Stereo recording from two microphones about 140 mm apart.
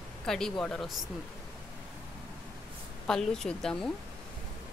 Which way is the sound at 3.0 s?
5° left (ahead or behind).